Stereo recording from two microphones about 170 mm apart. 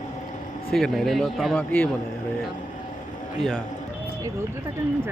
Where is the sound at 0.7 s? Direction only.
Centre (ahead or behind).